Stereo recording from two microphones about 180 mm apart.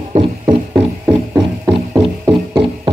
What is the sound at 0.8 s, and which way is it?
Music, 75° right (ahead or behind).